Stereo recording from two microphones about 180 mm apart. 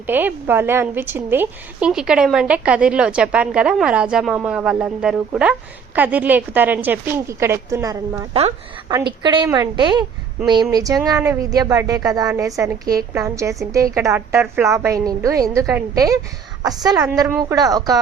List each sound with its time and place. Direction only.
0.1 s a woman's voice: 10° right (ahead or behind)
8.3 s a woman's voice: 35° right (ahead or behind)